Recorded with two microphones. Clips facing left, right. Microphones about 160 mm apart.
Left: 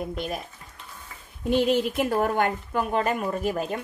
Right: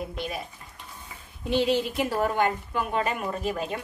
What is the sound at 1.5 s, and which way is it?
Speech, 50° left (ahead or behind).